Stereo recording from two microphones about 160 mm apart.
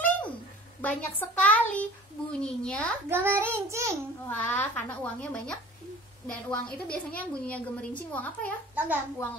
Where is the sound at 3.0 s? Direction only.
15° right (ahead or behind).